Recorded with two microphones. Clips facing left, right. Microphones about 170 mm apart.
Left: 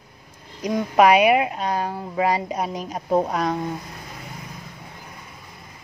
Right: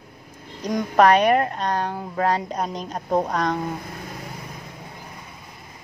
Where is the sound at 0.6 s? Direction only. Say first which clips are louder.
Even; 5° left (ahead or behind).